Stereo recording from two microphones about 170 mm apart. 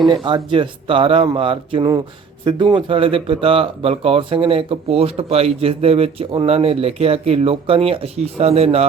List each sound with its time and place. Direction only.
0.3 s speech: 30° right (ahead or behind)